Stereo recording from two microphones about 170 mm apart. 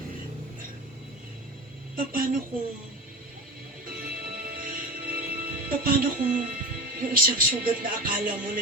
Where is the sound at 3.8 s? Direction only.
55° right (ahead or behind).